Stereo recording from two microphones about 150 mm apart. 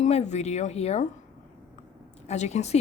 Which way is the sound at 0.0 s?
50° left (ahead or behind).